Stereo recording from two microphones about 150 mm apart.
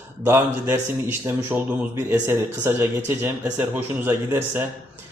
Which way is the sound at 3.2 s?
15° right (ahead or behind).